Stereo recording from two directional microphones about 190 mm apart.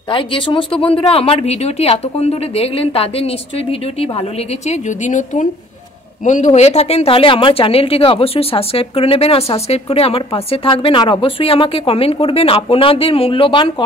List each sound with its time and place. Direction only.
0.1 s speech: 25° left (ahead or behind)